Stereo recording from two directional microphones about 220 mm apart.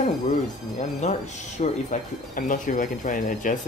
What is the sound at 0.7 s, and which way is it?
Speech, 30° left (ahead or behind).